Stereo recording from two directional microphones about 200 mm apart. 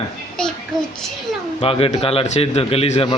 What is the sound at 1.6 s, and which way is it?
A man's voice, 30° left (ahead or behind).